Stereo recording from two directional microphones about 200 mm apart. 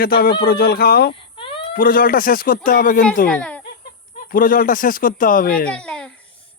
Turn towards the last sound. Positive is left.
turn(degrees=5)  # may be behind; listen again after turning